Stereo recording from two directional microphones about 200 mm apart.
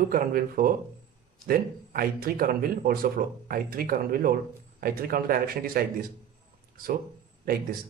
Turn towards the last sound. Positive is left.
turn(degrees=-45)  # may be behind; listen again after turning